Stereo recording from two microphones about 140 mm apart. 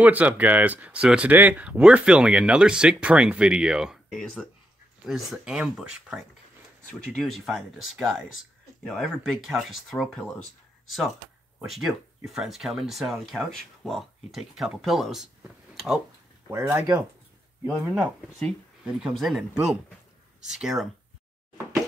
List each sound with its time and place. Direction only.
0.0 s speech: 10° right (ahead or behind)
11.6 s speech: centre (ahead or behind)
15.7 s a sound: centre (ahead or behind)
16.4 s speech: 15° right (ahead or behind)
17.9 s speech: centre (ahead or behind)